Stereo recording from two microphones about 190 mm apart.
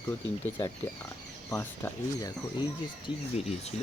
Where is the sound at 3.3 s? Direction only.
35° left (ahead or behind).